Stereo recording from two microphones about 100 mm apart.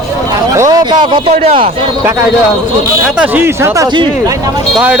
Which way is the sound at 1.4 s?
70° right (ahead or behind).